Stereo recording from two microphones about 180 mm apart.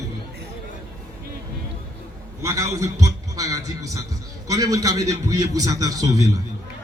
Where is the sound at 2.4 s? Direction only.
15° right (ahead or behind).